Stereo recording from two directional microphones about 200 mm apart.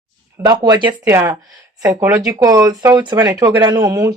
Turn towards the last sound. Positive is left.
turn(degrees=-15)  # may be behind; listen again after turning